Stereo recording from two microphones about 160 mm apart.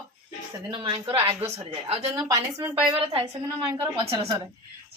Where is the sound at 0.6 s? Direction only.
30° right (ahead or behind).